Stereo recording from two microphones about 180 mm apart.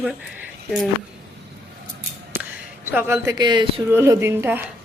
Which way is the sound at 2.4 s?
10° right (ahead or behind).